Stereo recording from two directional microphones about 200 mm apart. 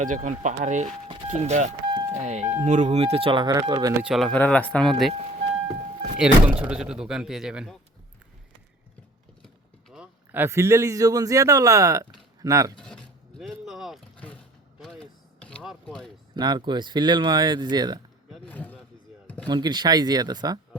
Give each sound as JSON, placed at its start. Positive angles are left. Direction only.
{"t": 0.0, "sound": "speech", "side_deg": -40}
{"t": 1.0, "sound": "a sound", "side_deg": -25}
{"t": 1.3, "sound": "speech", "side_deg": -35}
{"t": 4.0, "sound": "speech", "side_deg": 0}
{"t": 6.1, "sound": "speech", "side_deg": -5}
{"t": 9.9, "sound": "a man's voice", "side_deg": -5}
{"t": 12.8, "sound": "vehicle", "side_deg": 5}
{"t": 14.8, "sound": "a sound", "side_deg": 5}
{"t": 16.3, "sound": "speech", "side_deg": -20}
{"t": 18.3, "sound": "a sound", "side_deg": 5}
{"t": 19.5, "sound": "speech", "side_deg": -20}